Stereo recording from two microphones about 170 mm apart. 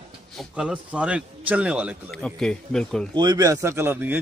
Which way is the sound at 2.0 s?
5° left (ahead or behind).